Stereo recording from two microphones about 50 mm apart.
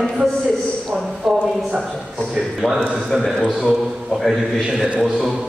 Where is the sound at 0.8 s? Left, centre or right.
Centre.